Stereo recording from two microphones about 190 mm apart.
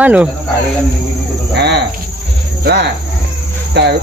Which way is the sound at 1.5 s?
60° right (ahead or behind).